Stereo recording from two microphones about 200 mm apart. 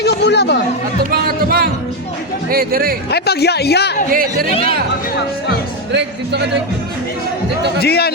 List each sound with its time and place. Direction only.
0.0 s speech: 60° left (ahead or behind)
1.1 s speech: 50° right (ahead or behind)
3.1 s speech: 55° left (ahead or behind)
4.1 s speech: 45° right (ahead or behind)
5.9 s speech: 60° right (ahead or behind)
7.8 s speech: 50° left (ahead or behind)